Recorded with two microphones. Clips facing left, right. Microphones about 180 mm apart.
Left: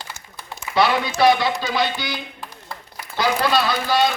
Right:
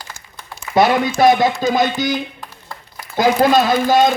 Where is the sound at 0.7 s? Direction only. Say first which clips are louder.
Right 5 dB; 45° right (ahead or behind).